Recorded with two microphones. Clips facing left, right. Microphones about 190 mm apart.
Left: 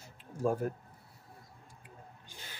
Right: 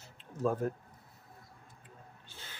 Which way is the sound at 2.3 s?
15° left (ahead or behind).